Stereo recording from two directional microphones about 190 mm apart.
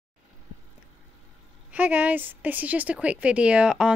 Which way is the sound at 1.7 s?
10° right (ahead or behind).